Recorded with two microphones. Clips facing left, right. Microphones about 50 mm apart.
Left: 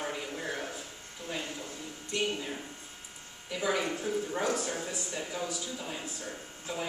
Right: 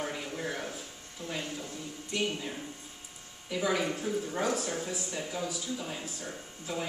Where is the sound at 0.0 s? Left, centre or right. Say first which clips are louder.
Right 1 dB; centre.